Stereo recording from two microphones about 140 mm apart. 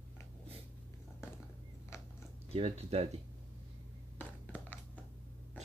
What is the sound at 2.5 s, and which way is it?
Speech, 45° right (ahead or behind).